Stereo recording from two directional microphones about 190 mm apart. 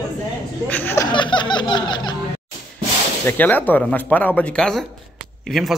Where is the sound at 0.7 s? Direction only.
10° left (ahead or behind).